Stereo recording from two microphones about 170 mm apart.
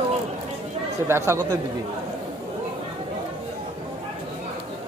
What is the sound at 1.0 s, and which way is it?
Speech, 15° right (ahead or behind).